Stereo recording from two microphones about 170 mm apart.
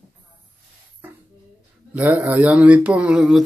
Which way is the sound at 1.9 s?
10° right (ahead or behind).